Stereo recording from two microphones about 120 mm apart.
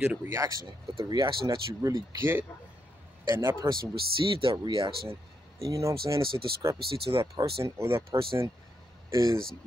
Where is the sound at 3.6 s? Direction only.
40° right (ahead or behind).